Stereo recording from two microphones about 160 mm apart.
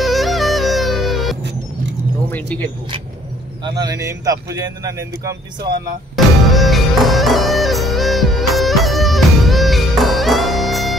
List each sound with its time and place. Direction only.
0.0 s music: centre (ahead or behind)
2.3 s a sound: 10° left (ahead or behind)
3.6 s speech: 25° right (ahead or behind)
6.1 s music: centre (ahead or behind)